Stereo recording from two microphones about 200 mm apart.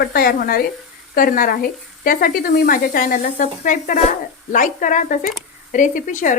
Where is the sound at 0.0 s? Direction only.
50° left (ahead or behind).